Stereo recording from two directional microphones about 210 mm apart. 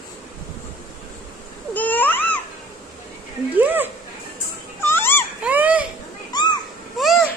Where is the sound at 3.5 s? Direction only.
10° right (ahead or behind).